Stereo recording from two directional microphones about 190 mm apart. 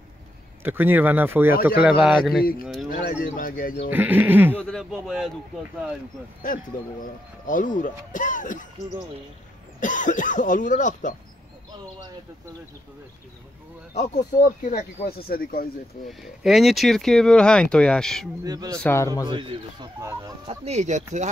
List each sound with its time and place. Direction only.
0.7 s speech: 10° right (ahead or behind)
2.9 s speech: 45° left (ahead or behind)
3.9 s speech: 10° right (ahead or behind)
4.6 s speech: centre (ahead or behind)
7.4 s speech: 45° left (ahead or behind)
9.8 s speech: 45° left (ahead or behind)
13.9 s speech: 45° left (ahead or behind)
15.0 s speech: 50° left (ahead or behind)
16.1 s speech: centre (ahead or behind)
18.4 s speech: 20° right (ahead or behind)
18.8 s speech: 10° left (ahead or behind)
19.2 s speech: 25° right (ahead or behind)
20.4 s speech: 35° right (ahead or behind)